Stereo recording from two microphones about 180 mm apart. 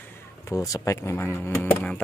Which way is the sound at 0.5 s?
20° left (ahead or behind).